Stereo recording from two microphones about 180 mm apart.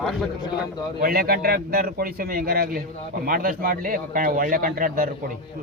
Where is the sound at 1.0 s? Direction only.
55° right (ahead or behind).